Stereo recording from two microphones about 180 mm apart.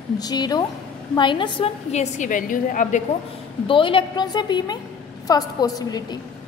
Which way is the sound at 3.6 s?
30° left (ahead or behind).